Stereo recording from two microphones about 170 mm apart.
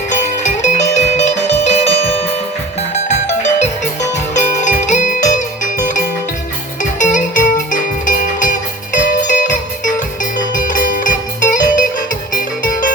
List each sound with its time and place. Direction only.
0.1 s music: 45° left (ahead or behind)
4.4 s music: 45° left (ahead or behind)